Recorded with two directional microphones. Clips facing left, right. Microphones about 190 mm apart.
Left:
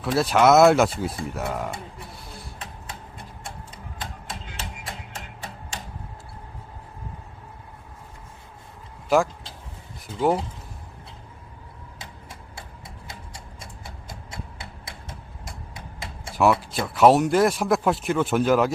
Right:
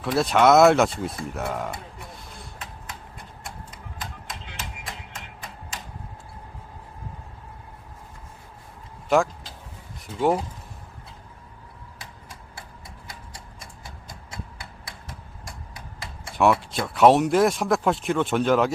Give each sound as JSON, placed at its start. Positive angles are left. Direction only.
{"t": 0.0, "sound": "speech", "side_deg": 0}
{"t": 3.4, "sound": "a sound", "side_deg": 30}
{"t": 4.4, "sound": "music", "side_deg": 30}
{"t": 9.0, "sound": "speech", "side_deg": 0}
{"t": 14.6, "sound": "tick-tock", "side_deg": 25}
{"t": 16.3, "sound": "speech", "side_deg": 0}